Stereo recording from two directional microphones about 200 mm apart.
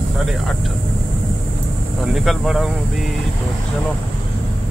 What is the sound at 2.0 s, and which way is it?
Speech, centre (ahead or behind).